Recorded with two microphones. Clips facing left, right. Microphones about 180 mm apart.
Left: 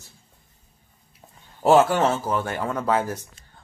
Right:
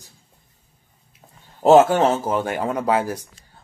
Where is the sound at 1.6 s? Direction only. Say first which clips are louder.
Right 4 dB; 20° right (ahead or behind).